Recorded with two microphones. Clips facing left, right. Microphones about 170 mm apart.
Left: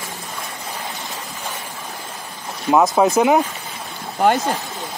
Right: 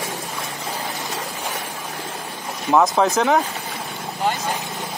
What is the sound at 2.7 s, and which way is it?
Speech, 10° left (ahead or behind).